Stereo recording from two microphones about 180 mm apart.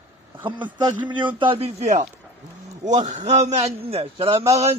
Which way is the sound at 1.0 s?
25° right (ahead or behind).